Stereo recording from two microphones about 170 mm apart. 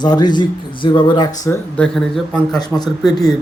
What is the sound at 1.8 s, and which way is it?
Speech, 5° left (ahead or behind).